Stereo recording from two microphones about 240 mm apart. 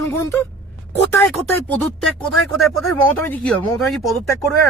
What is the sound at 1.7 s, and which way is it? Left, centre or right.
Speech, centre.